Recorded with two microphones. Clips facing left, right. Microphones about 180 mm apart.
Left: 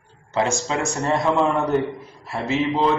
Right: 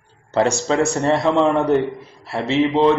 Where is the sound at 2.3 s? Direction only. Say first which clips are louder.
Right 4 dB; 30° right (ahead or behind).